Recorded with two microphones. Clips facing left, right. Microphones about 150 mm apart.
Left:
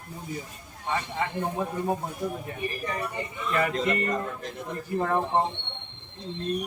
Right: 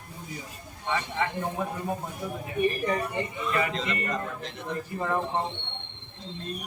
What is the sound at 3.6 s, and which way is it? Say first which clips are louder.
Speech: left 6 dB; 45° left (ahead or behind).